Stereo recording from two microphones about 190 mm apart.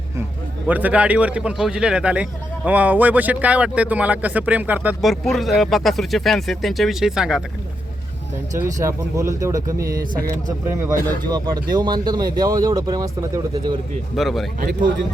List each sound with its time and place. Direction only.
0.7 s speech: 10° right (ahead or behind)
8.6 s speech: 15° right (ahead or behind)
14.2 s speech: centre (ahead or behind)
14.6 s speech: 45° right (ahead or behind)